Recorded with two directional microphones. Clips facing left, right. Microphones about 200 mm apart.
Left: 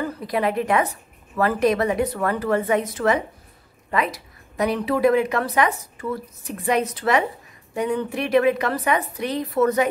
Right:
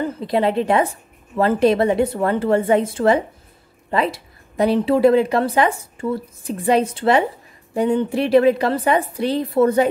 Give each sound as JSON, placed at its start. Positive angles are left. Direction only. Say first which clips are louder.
{"t": 0.0, "sound": "a woman's voice", "louder": "right 4 dB", "side_deg": -25}